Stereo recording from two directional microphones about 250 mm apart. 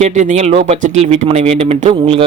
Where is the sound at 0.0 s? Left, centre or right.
Right.